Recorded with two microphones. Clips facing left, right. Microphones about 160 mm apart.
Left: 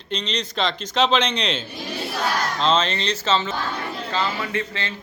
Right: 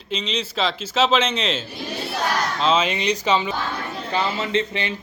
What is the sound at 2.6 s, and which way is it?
Speech, 10° right (ahead or behind).